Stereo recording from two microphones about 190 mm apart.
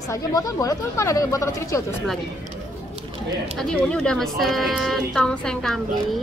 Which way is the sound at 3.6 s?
5° left (ahead or behind).